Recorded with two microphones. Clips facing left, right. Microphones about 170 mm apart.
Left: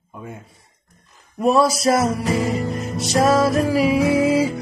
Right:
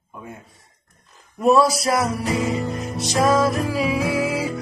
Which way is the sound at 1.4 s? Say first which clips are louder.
Even; 25° left (ahead or behind).